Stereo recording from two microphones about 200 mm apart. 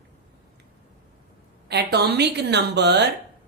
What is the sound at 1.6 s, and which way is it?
A woman's voice, 55° right (ahead or behind).